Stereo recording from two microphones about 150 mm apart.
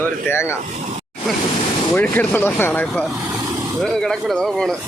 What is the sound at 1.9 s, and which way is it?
Speech, 10° left (ahead or behind).